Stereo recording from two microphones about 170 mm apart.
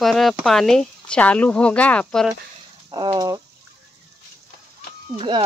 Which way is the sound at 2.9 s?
25° right (ahead or behind).